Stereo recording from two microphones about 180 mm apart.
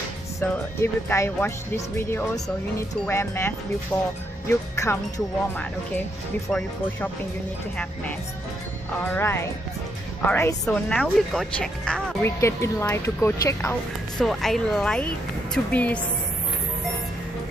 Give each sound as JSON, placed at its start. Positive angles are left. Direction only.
{"t": 0.3, "sound": "speech", "side_deg": 15}
{"t": 6.5, "sound": "speech", "side_deg": 5}
{"t": 9.1, "sound": "speech", "side_deg": 15}
{"t": 12.4, "sound": "speech", "side_deg": 15}
{"t": 14.2, "sound": "speech", "side_deg": 0}